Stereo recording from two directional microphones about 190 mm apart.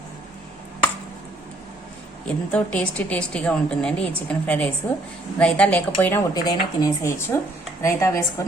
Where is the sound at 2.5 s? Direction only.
5° left (ahead or behind).